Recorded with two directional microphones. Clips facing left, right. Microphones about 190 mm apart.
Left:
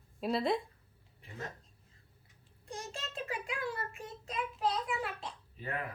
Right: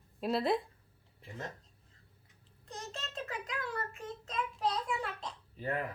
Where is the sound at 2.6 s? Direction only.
10° left (ahead or behind).